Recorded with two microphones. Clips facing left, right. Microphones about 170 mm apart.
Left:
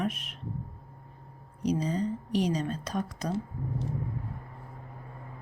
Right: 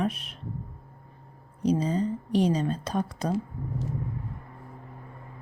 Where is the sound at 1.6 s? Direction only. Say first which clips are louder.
Right 3 dB; 30° right (ahead or behind).